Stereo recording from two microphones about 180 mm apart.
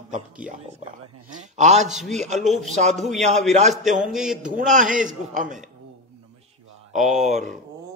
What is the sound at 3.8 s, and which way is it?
Speech, 5° right (ahead or behind).